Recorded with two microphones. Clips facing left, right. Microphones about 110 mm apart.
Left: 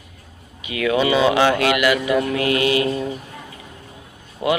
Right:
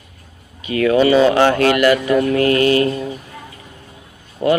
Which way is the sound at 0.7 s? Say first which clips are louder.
Right 5 dB; 40° right (ahead or behind).